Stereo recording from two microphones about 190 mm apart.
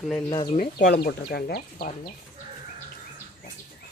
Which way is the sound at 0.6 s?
50° left (ahead or behind).